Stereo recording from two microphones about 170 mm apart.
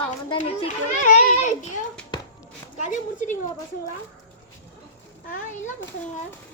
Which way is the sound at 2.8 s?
45° left (ahead or behind).